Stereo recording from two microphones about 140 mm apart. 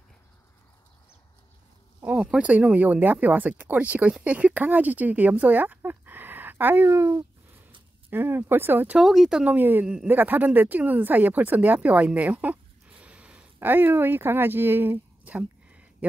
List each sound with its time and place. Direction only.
2.1 s speech: 5° right (ahead or behind)
9.0 s speech: centre (ahead or behind)